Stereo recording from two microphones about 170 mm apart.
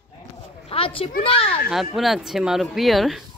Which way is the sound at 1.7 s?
Centre (ahead or behind).